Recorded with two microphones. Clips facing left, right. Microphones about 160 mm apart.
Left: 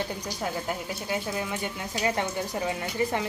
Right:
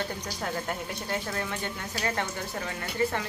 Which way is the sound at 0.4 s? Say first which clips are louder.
Left 1 dB; 5° left (ahead or behind).